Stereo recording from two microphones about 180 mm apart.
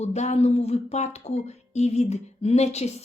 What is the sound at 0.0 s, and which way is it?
Speech, 40° left (ahead or behind).